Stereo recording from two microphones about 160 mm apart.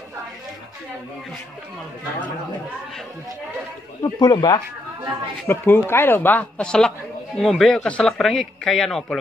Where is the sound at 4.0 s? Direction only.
25° left (ahead or behind).